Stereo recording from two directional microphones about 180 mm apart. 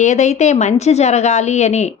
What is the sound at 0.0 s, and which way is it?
A woman's voice, 40° left (ahead or behind).